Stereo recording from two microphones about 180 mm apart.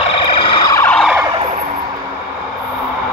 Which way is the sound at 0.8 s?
10° left (ahead or behind).